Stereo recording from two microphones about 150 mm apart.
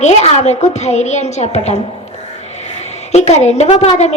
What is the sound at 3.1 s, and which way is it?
A woman's voice, 45° left (ahead or behind).